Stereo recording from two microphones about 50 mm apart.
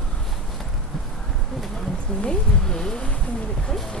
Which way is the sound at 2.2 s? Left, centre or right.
Centre.